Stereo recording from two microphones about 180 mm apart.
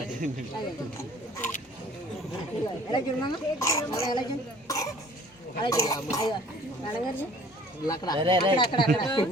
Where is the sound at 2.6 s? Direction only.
25° left (ahead or behind).